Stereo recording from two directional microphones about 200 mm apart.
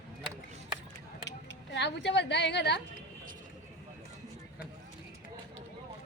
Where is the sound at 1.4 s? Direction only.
60° left (ahead or behind).